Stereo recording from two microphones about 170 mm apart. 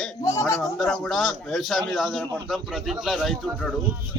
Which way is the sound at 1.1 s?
Centre (ahead or behind).